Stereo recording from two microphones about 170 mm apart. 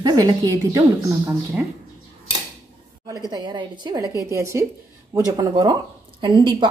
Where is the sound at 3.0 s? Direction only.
25° right (ahead or behind).